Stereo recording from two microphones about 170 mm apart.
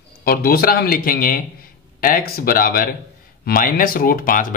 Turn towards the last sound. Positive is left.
turn(degrees=55)  # may be behind; listen again after turning